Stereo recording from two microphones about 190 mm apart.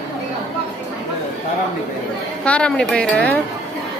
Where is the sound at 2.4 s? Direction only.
5° left (ahead or behind).